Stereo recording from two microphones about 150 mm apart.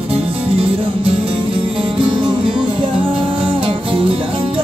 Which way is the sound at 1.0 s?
35° right (ahead or behind).